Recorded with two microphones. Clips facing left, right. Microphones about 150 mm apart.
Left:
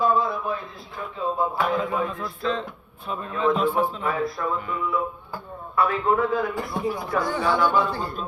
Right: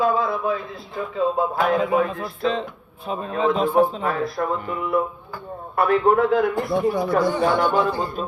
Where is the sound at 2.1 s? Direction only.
70° right (ahead or behind).